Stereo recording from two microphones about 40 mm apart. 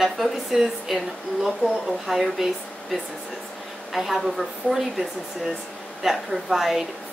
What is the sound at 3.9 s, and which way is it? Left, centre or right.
A woman's voice, centre.